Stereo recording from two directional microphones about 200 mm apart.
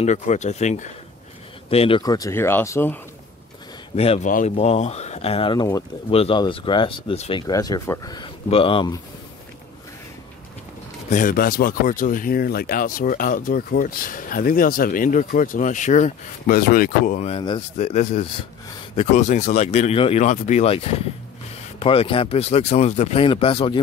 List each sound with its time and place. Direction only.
0.0 s speech: 35° left (ahead or behind); by 3.0 s 15° left (ahead or behind)
3.9 s speech: 30° left (ahead or behind)
11.1 s speech: 40° left (ahead or behind)
17.4 s speech: 20° left (ahead or behind)
17.7 s speech: 35° left (ahead or behind)